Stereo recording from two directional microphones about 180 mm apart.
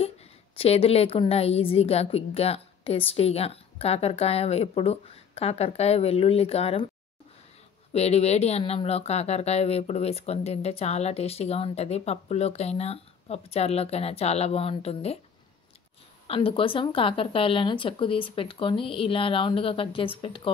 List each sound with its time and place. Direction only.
0.0 s speech: 35° left (ahead or behind)
7.9 s speech: 35° left (ahead or behind)
16.3 s speech: 30° left (ahead or behind)